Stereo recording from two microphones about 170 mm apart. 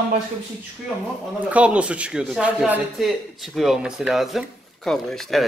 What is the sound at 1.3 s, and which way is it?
Speech, 10° right (ahead or behind).